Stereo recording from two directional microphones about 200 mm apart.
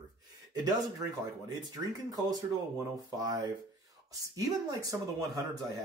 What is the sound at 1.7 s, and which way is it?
Speech, 20° right (ahead or behind).